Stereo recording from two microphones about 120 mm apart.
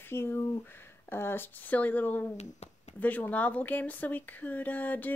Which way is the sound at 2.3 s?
65° left (ahead or behind).